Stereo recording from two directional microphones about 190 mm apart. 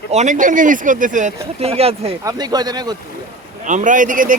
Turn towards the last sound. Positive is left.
turn(degrees=-45)  # may be behind; listen again after turning